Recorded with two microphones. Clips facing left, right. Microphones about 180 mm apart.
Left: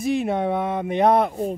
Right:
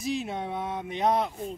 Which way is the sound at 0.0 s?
60° left (ahead or behind).